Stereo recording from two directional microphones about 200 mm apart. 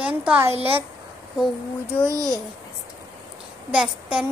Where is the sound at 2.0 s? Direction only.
15° right (ahead or behind).